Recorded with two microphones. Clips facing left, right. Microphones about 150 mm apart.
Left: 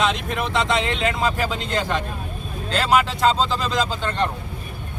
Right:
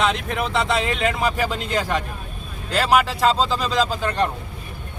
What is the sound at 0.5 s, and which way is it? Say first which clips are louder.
Speech: even; 5° right (ahead or behind).